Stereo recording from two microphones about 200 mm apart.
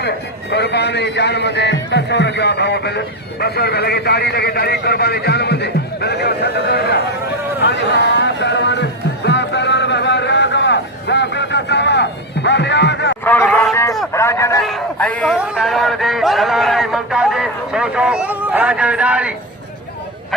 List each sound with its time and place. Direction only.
0.5 s a man's voice: 55° left (ahead or behind)
7.6 s music: 60° left (ahead or behind)
13.2 s a sound: 10° left (ahead or behind)
14.6 s speech: 5° left (ahead or behind)